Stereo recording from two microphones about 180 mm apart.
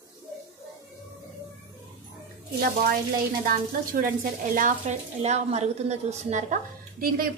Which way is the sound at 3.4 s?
50° right (ahead or behind).